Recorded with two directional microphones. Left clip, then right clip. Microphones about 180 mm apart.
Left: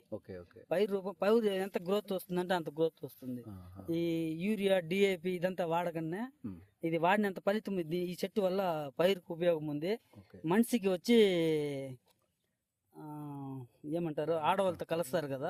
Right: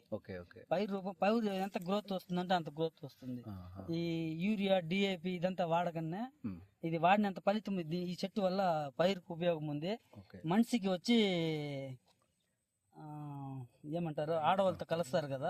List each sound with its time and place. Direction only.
0.1 s speech: 15° left (ahead or behind)
0.7 s speech: 50° left (ahead or behind)
3.4 s speech: 15° left (ahead or behind)
3.8 s speech: 50° left (ahead or behind)
13.0 s speech: 45° left (ahead or behind)